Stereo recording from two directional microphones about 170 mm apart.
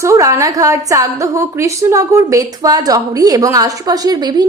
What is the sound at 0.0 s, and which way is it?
A woman's voice, 20° right (ahead or behind).